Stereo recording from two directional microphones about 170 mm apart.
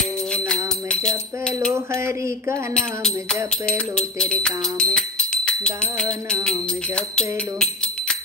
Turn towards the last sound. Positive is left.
turn(degrees=5)  # may be behind; listen again after turning